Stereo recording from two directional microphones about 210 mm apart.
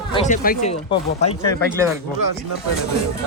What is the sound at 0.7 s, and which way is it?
Speech, 30° left (ahead or behind).